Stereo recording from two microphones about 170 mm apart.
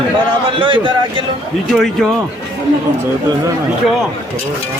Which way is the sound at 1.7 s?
Centre (ahead or behind).